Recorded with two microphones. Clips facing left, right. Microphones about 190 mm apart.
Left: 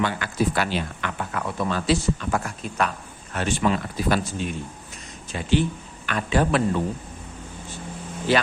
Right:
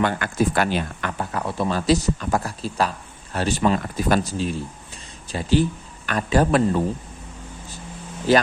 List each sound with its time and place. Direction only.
0.0 s speech: 50° right (ahead or behind)
1.2 s speech: 30° right (ahead or behind)
8.3 s speech: 40° right (ahead or behind)